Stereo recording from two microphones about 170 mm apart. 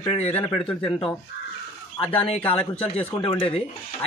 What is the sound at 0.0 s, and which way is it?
A man's voice, 30° left (ahead or behind).